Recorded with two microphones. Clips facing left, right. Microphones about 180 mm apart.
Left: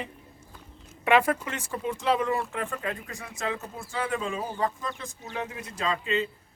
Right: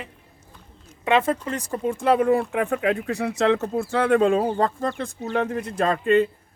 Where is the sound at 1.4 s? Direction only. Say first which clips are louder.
Right 6 dB; 40° right (ahead or behind).